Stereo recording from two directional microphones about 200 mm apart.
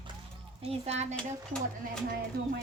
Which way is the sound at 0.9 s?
35° right (ahead or behind).